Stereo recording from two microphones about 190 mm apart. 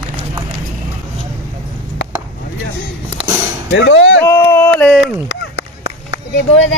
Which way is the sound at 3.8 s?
75° left (ahead or behind).